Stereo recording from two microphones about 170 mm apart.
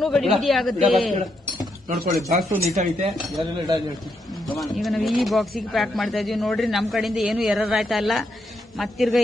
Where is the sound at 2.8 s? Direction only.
45° right (ahead or behind).